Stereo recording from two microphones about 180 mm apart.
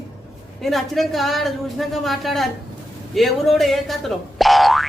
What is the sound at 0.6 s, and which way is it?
Speech, centre (ahead or behind).